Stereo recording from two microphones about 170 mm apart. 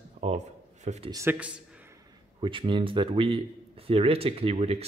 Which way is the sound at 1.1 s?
15° right (ahead or behind).